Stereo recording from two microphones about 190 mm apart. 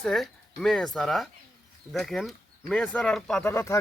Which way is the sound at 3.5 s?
15° left (ahead or behind).